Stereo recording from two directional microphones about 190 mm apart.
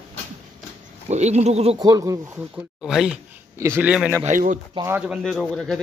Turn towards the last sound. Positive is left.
turn(degrees=0)  # may be behind; listen again after turning